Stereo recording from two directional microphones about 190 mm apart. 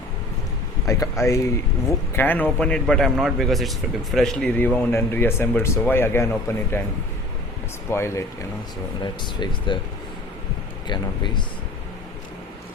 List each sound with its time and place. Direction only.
0.9 s a man's voice: 15° left (ahead or behind)
7.9 s speech: 15° left (ahead or behind)
10.8 s speech: 25° left (ahead or behind)